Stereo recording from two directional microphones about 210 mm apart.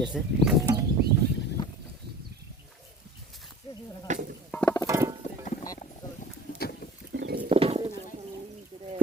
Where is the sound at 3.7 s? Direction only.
20° left (ahead or behind).